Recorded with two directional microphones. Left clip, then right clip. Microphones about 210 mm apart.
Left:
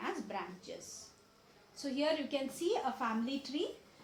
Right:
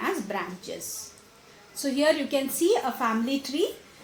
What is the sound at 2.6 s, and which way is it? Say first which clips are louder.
A woman's voice: right 11 dB; 50° right (ahead or behind).